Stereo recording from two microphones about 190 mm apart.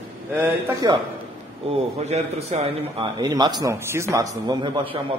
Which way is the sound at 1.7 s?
30° right (ahead or behind).